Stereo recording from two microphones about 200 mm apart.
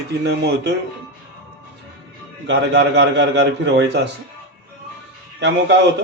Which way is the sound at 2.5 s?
65° right (ahead or behind).